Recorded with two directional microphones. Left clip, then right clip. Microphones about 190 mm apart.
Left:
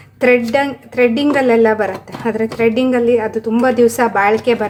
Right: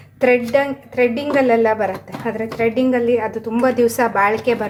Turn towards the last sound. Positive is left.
turn(degrees=20)  # may be behind; listen again after turning